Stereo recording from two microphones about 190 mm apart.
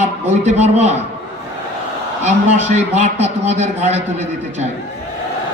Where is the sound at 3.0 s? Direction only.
35° right (ahead or behind).